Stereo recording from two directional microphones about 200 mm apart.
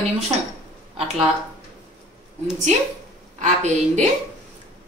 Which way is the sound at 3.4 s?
35° right (ahead or behind).